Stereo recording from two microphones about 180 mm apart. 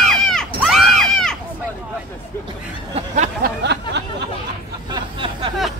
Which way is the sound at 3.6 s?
70° right (ahead or behind).